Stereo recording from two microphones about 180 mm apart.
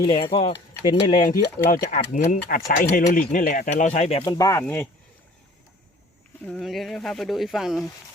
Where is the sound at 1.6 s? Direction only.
50° left (ahead or behind).